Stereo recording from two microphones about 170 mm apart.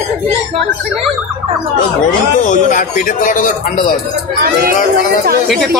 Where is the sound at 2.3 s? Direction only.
45° left (ahead or behind).